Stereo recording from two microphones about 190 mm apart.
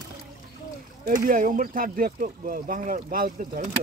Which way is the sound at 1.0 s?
45° right (ahead or behind).